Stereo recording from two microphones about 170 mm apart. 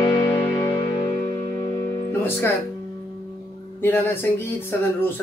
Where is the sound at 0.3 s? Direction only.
20° left (ahead or behind).